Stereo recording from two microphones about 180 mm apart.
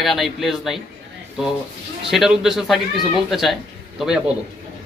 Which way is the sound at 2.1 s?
Centre (ahead or behind).